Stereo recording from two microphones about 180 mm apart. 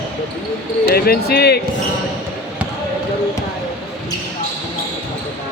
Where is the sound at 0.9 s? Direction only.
60° left (ahead or behind).